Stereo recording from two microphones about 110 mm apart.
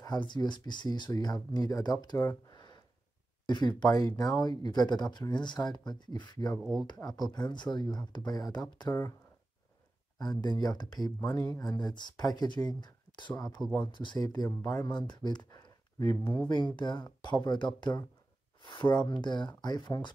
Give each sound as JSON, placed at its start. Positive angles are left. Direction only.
{"t": 0.0, "sound": "speech", "side_deg": 40}
{"t": 2.5, "sound": "a sound", "side_deg": 40}
{"t": 3.4, "sound": "speech", "side_deg": 40}
{"t": 10.1, "sound": "speech", "side_deg": 40}
{"t": 13.6, "sound": "speech", "side_deg": 0}
{"t": 13.9, "sound": "speech", "side_deg": 40}
{"t": 18.6, "sound": "a sound", "side_deg": 45}
{"t": 19.0, "sound": "speech", "side_deg": 45}